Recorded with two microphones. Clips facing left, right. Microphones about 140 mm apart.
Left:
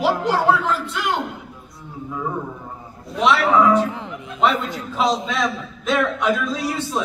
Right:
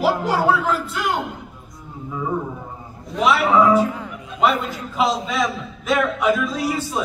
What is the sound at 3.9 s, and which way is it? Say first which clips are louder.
Music: even; 20° left (ahead or behind).